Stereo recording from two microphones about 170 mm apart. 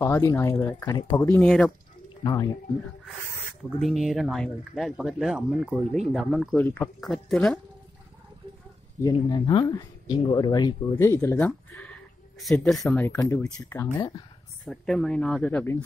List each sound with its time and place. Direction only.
0.0 s speech: 15° left (ahead or behind)
0.9 s speech: 25° left (ahead or behind)
1.4 s speech: 5° left (ahead or behind)
2.2 s speech: 20° left (ahead or behind)
3.8 s speech: centre (ahead or behind)
6.5 s speech: 10° left (ahead or behind)
9.0 s speech: 25° left (ahead or behind)
11.1 s speech: 10° left (ahead or behind)
13.0 s speech: 15° left (ahead or behind)
14.6 s speech: 5° left (ahead or behind)